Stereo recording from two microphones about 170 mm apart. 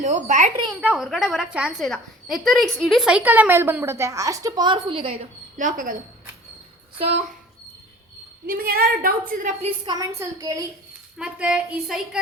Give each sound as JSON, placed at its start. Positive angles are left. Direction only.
{"t": 0.0, "sound": "speech", "side_deg": -45}
{"t": 0.8, "sound": "a woman's voice", "side_deg": -5}
{"t": 5.5, "sound": "speech", "side_deg": -50}
{"t": 8.4, "sound": "a woman's voice", "side_deg": -60}
{"t": 9.8, "sound": "a woman's voice", "side_deg": -20}
{"t": 11.2, "sound": "a woman's voice", "side_deg": -5}